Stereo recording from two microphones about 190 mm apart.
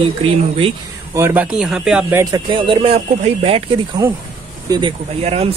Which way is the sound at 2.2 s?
20° right (ahead or behind).